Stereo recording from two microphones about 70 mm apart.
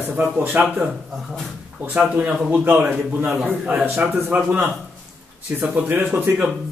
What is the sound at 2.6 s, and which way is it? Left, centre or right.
Speech, right.